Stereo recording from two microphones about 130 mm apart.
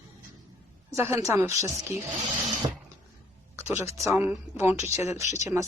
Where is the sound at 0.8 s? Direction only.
20° right (ahead or behind).